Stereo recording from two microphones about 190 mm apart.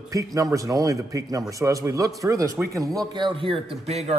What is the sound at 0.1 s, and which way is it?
A man's voice, 15° right (ahead or behind).